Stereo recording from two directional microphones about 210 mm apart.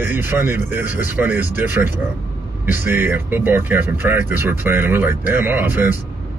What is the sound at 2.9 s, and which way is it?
Speech, 10° right (ahead or behind).